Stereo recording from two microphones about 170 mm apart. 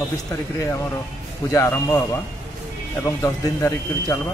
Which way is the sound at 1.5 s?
15° left (ahead or behind).